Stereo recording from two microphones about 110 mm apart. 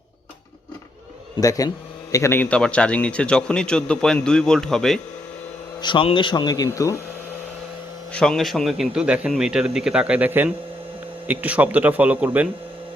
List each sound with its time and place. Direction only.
1.4 s a man's voice: 30° left (ahead or behind)
2.4 s a man's voice: 10° left (ahead or behind)
5.8 s speech: 50° left (ahead or behind); by 6.9 s 30° left (ahead or behind)
8.1 s a man's voice: 5° left (ahead or behind); by 12.5 s 15° right (ahead or behind)